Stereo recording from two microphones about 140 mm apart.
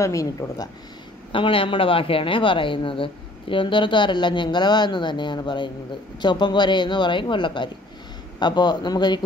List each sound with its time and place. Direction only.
0.0 s speech: 25° left (ahead or behind)
1.3 s speech: 40° left (ahead or behind)